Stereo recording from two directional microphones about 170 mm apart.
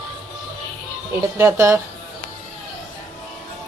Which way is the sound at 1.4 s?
15° right (ahead or behind).